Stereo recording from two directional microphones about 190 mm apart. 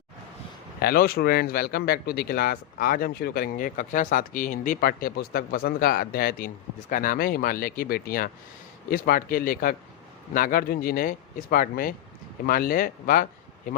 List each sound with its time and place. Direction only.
0.8 s speech: 55° left (ahead or behind)